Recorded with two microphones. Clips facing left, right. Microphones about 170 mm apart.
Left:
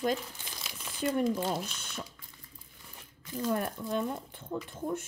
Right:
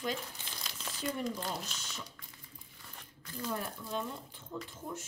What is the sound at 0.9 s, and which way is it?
Speech, 55° left (ahead or behind).